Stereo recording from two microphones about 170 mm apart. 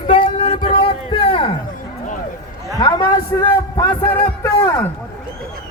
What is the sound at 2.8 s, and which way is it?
A man's voice, 25° left (ahead or behind).